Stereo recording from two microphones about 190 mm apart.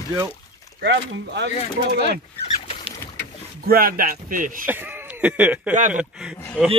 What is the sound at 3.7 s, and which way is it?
Speech, 50° right (ahead or behind).